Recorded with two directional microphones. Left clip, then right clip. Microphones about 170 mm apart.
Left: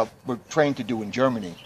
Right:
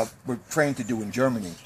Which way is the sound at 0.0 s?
55° right (ahead or behind).